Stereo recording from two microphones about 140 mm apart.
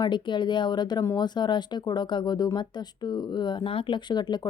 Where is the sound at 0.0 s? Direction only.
35° left (ahead or behind).